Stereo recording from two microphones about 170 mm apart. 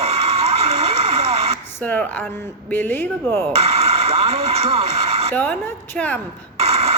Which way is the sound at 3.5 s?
35° right (ahead or behind).